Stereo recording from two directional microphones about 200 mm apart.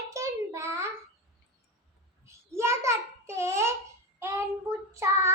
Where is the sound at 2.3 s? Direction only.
15° right (ahead or behind).